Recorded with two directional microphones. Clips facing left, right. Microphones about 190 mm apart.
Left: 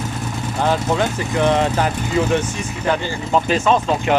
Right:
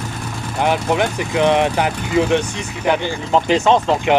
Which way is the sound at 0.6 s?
15° right (ahead or behind).